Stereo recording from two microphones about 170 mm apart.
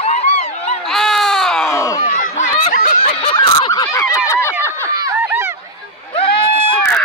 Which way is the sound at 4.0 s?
20° left (ahead or behind).